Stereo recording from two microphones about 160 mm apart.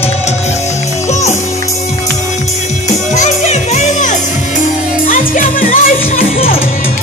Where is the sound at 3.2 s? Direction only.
45° left (ahead or behind).